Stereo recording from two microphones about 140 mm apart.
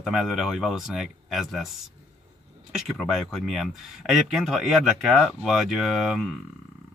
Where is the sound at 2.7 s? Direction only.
Centre (ahead or behind).